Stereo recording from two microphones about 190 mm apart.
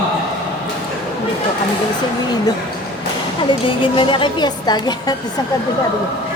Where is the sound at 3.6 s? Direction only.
25° left (ahead or behind).